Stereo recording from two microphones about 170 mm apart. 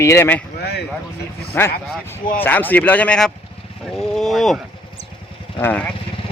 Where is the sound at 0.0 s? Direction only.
15° left (ahead or behind).